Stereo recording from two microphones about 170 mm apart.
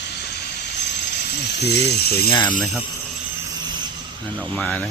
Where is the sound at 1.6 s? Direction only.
70° left (ahead or behind).